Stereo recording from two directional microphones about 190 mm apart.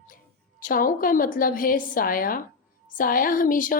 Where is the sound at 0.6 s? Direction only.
45° left (ahead or behind).